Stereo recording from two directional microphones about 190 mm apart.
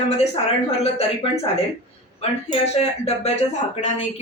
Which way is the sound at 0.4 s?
30° left (ahead or behind).